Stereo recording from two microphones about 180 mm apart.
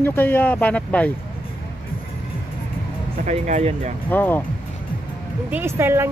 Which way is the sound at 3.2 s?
40° right (ahead or behind).